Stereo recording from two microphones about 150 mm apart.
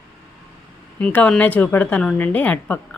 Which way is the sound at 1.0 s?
10° left (ahead or behind).